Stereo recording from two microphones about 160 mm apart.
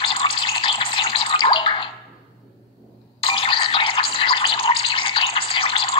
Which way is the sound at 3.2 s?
35° left (ahead or behind).